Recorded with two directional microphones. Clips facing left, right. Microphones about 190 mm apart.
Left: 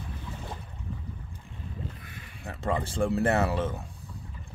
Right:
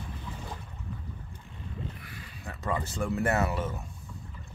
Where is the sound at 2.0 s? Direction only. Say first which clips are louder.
Even; 25° left (ahead or behind).